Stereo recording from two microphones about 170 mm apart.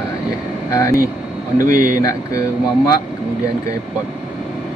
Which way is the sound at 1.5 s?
55° right (ahead or behind).